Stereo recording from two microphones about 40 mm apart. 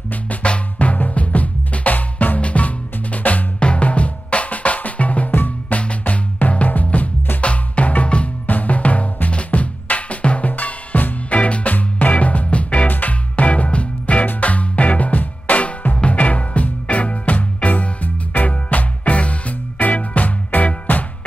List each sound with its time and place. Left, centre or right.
0.1 s music: left
3.5 s drum: left
5.7 s music: left
7.4 s music: left
8.5 s drum: left
10.5 s music: left
12.8 s music: left